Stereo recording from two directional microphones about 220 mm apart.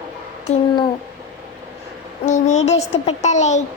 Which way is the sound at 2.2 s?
30° left (ahead or behind).